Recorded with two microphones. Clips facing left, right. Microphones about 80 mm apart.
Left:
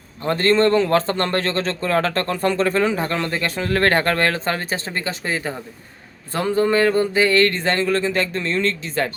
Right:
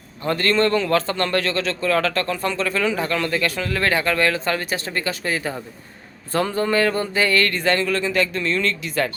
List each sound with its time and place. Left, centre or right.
0.3 s speech: left
3.7 s speech: left